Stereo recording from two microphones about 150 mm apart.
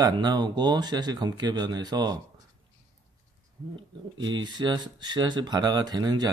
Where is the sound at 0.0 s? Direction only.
30° right (ahead or behind).